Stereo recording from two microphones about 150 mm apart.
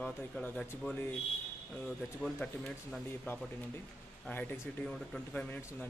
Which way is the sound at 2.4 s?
5° left (ahead or behind).